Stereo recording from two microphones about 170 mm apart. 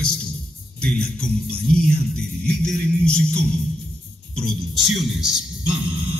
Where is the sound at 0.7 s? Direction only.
5° left (ahead or behind).